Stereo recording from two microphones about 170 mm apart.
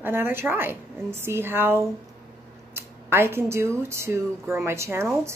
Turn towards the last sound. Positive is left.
turn(degrees=-15)  # may be behind; listen again after turning